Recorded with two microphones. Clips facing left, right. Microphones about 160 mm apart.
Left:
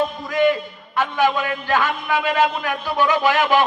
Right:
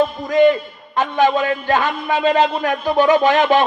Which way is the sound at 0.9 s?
20° right (ahead or behind).